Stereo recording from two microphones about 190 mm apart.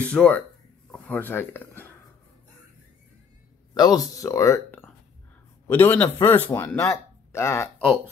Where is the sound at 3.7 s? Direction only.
20° left (ahead or behind).